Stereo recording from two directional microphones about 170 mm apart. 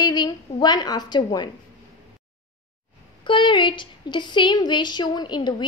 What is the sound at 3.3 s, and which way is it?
A woman's voice, 30° left (ahead or behind).